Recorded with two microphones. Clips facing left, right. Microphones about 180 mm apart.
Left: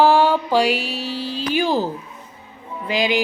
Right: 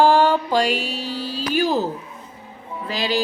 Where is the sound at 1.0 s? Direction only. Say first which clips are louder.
Left 1 dB; 45° right (ahead or behind).